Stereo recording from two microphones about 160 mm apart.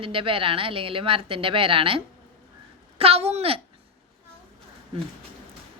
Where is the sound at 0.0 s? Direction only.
35° right (ahead or behind).